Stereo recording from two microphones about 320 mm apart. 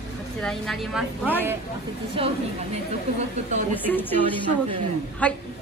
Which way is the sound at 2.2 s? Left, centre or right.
Centre.